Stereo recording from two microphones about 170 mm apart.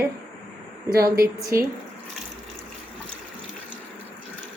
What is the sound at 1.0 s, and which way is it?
Speech, 60° right (ahead or behind).